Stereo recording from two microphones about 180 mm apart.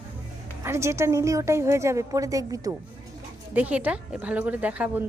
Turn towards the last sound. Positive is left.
turn(degrees=-5)  # may be behind; listen again after turning